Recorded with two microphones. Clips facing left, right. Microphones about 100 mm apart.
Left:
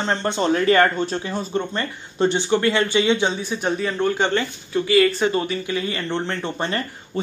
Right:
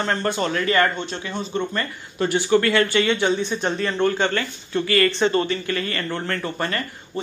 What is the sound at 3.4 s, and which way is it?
Speech, 10° left (ahead or behind).